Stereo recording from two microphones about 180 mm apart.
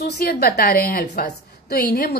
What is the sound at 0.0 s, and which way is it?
A woman's voice, 60° left (ahead or behind).